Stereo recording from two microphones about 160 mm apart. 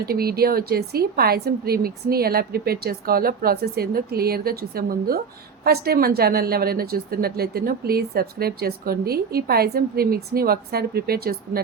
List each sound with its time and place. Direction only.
0.0 s a woman's voice: 75° right (ahead or behind)